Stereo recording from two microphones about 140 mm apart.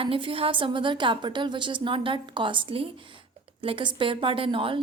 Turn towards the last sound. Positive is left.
turn(degrees=-40)  # may be behind; listen again after turning